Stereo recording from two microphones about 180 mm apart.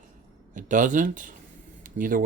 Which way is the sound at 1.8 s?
45° right (ahead or behind).